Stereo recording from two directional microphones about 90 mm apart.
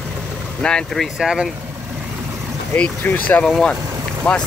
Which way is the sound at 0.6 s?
10° left (ahead or behind).